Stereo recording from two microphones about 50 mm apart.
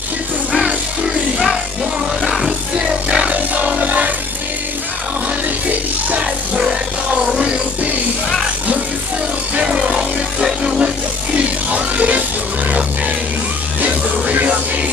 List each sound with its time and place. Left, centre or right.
2.2 s music: centre
2.9 s music: centre
3.3 s music: right
5.7 s music: right
9.6 s a sound: centre
11.3 s music: right
13.7 s music: right